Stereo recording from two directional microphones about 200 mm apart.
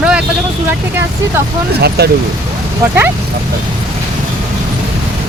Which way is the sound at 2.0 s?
55° right (ahead or behind).